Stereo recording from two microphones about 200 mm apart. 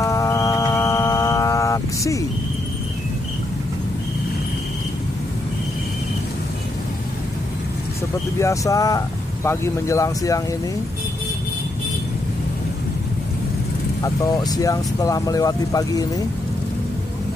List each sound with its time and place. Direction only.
0.0 s a sound: 15° left (ahead or behind)
8.4 s speech: 15° left (ahead or behind)
14.0 s speech: 15° left (ahead or behind)